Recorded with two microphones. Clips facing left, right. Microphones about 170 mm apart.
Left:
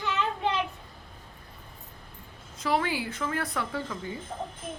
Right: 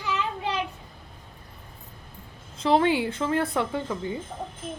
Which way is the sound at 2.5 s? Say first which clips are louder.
Right 7 dB; 25° right (ahead or behind).